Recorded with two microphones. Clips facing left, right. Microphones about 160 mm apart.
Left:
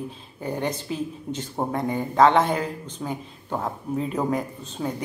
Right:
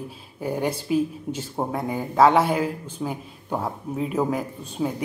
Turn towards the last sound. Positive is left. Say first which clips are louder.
# right 3 dB
turn(degrees=-5)  # may be behind; listen again after turning